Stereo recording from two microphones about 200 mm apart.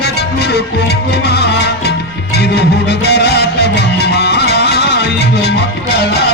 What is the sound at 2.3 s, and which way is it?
Music, 55° left (ahead or behind).